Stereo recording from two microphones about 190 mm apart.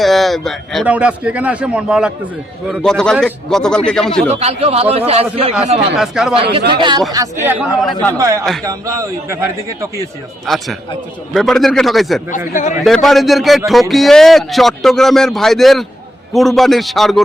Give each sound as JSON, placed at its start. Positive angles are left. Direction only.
{"t": 0.0, "sound": "speech", "side_deg": 0}
{"t": 4.3, "sound": "a man's voice", "side_deg": -35}
{"t": 6.0, "sound": "speech", "side_deg": 0}
{"t": 6.3, "sound": "a man's voice", "side_deg": -30}
{"t": 7.8, "sound": "speech", "side_deg": 0}
{"t": 8.2, "sound": "a man's voice", "side_deg": -15}
{"t": 10.4, "sound": "speech", "side_deg": 0}